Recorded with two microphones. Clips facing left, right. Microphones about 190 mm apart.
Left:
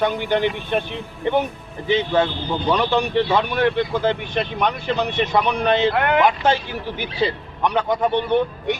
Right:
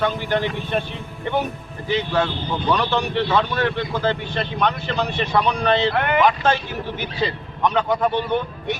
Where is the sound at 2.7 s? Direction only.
15° left (ahead or behind).